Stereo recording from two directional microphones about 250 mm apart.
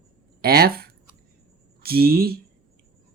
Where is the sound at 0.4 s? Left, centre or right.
Right.